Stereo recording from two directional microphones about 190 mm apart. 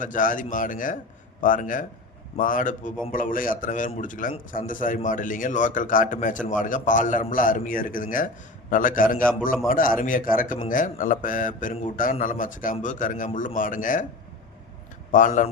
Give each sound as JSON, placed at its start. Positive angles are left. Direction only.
{"t": 0.0, "sound": "a man's voice", "side_deg": 45}
{"t": 15.1, "sound": "a man's voice", "side_deg": 45}